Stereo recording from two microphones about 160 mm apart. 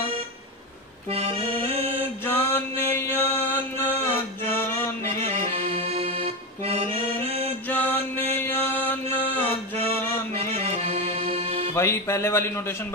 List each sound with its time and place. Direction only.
1.1 s accordion: 35° right (ahead or behind)
2.2 s mantra: 15° left (ahead or behind)
5.1 s accordion: 35° right (ahead or behind)
7.7 s music: 10° left (ahead or behind)
10.3 s accordion: 35° right (ahead or behind)
11.7 s speech: 15° left (ahead or behind)